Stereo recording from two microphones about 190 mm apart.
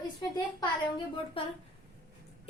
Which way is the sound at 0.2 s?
25° left (ahead or behind).